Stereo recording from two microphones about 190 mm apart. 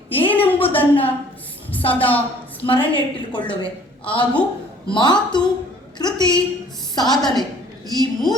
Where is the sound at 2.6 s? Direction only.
25° left (ahead or behind).